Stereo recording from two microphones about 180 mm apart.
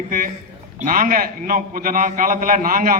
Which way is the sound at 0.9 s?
50° right (ahead or behind).